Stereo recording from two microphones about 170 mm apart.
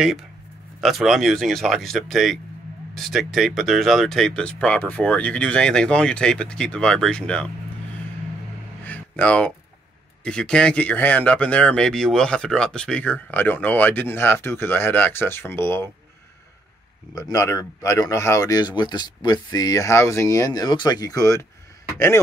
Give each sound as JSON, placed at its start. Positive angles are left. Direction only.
{"t": 0.7, "sound": "speech", "side_deg": 0}
{"t": 8.8, "sound": "a sound", "side_deg": 10}
{"t": 10.2, "sound": "speech", "side_deg": 5}
{"t": 17.1, "sound": "a man's voice", "side_deg": 20}